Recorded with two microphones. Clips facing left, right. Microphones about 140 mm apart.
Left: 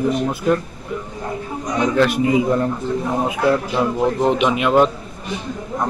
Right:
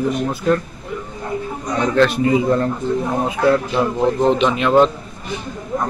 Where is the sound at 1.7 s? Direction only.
15° left (ahead or behind).